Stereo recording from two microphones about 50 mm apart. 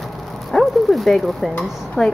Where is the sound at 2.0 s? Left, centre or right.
Centre.